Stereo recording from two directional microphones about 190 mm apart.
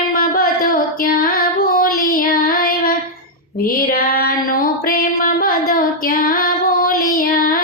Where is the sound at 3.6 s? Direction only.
50° left (ahead or behind).